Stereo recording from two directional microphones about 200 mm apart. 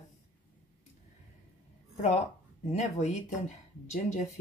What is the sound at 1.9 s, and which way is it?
Speech, 30° left (ahead or behind).